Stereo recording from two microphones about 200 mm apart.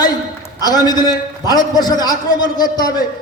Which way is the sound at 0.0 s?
20° left (ahead or behind).